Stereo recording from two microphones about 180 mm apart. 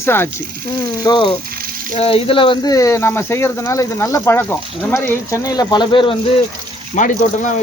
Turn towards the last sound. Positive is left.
turn(degrees=45)  # may be behind; listen again after turning